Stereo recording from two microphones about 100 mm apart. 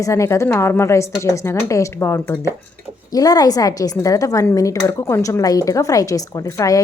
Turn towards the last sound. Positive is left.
turn(degrees=35)  # may be behind; listen again after turning